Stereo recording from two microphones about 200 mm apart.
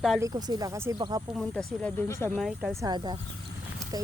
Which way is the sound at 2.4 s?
Centre (ahead or behind).